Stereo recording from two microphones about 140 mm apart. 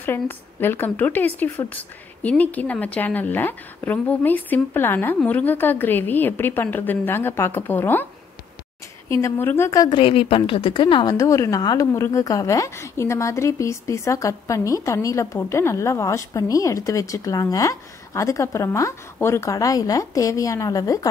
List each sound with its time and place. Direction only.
0.0 s speech: 15° left (ahead or behind)
9.1 s a woman's voice: 20° left (ahead or behind)
9.9 s a woman's voice: 40° left (ahead or behind); by 21.1 s 25° left (ahead or behind)